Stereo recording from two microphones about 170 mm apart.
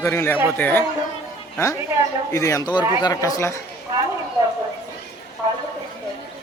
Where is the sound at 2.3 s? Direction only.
20° left (ahead or behind).